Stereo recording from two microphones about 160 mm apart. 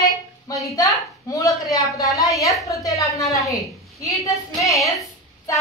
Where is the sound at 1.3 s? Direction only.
20° left (ahead or behind).